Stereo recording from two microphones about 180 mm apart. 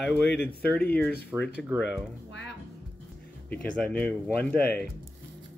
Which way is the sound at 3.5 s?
10° left (ahead or behind).